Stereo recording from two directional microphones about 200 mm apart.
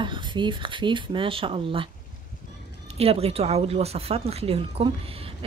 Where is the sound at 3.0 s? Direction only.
30° right (ahead or behind).